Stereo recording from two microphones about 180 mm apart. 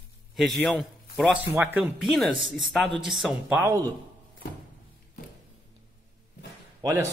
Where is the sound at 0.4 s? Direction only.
Centre (ahead or behind).